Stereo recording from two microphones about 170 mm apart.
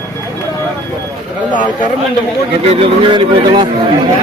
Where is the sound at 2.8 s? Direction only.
30° right (ahead or behind).